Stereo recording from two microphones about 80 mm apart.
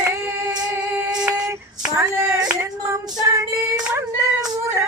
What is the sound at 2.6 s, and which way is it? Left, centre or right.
Child singing, right.